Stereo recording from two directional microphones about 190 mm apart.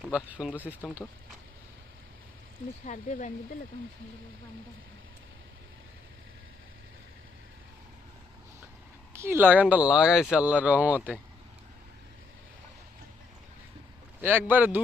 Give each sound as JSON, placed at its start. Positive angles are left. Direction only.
{"t": 0.0, "sound": "speech", "side_deg": -5}
{"t": 2.8, "sound": "speech", "side_deg": 40}
{"t": 9.1, "sound": "speech", "side_deg": -10}
{"t": 14.2, "sound": "speech", "side_deg": -10}